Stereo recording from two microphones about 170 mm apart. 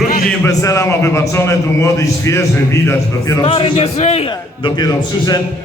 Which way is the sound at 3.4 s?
35° left (ahead or behind).